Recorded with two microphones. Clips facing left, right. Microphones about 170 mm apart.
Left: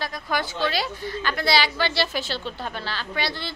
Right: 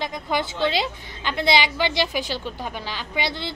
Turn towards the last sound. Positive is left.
turn(degrees=-20)  # may be behind; listen again after turning